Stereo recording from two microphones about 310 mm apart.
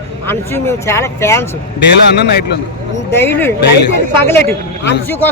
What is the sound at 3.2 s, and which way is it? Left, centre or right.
A man's voice, centre.